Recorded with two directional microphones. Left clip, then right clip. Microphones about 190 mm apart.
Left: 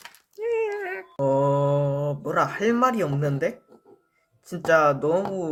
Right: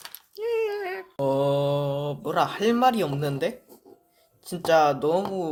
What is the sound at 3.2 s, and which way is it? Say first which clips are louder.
Speech: left 2 dB; centre (ahead or behind).